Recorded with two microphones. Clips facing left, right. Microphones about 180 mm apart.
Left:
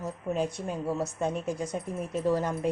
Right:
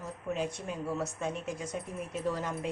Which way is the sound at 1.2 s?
35° left (ahead or behind).